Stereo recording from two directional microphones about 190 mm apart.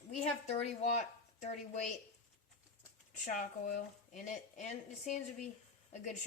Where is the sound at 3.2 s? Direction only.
45° left (ahead or behind).